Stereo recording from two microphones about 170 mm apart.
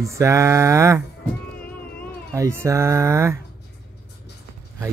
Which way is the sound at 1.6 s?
10° left (ahead or behind).